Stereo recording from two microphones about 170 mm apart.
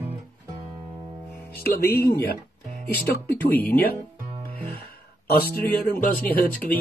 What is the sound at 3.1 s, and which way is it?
Speech, 65° left (ahead or behind).